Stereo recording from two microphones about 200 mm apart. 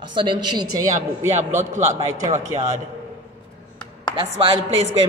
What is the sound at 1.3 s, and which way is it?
A man's voice, 35° right (ahead or behind).